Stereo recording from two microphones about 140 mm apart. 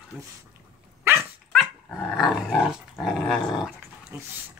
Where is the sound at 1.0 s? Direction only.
15° right (ahead or behind).